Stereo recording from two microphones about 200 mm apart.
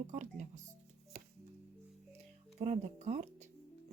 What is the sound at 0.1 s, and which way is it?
Speech, 35° right (ahead or behind).